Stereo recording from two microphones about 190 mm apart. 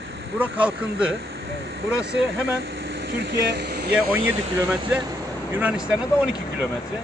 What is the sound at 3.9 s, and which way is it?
Speech, 5° right (ahead or behind).